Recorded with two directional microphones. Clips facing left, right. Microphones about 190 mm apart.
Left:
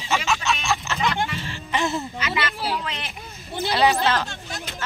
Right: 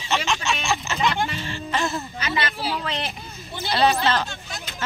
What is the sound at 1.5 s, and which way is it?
Speech, 15° left (ahead or behind).